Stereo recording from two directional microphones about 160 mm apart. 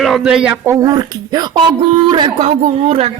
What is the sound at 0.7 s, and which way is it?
Music, 20° right (ahead or behind).